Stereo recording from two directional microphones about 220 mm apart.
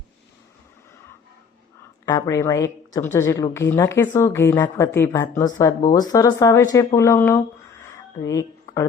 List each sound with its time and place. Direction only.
2.0 s speech: 15° left (ahead or behind)